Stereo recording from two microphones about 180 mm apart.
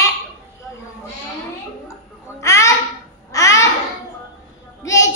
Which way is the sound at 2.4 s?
15° left (ahead or behind).